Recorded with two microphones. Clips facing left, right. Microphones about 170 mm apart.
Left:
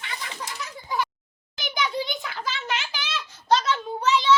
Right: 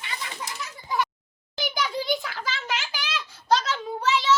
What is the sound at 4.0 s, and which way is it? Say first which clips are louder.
Child singing: left 2 dB; 5° right (ahead or behind).